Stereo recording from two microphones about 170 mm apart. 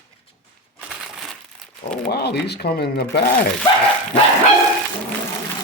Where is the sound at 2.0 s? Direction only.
70° left (ahead or behind).